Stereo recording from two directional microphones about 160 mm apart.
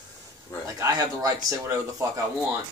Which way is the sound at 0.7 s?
20° right (ahead or behind).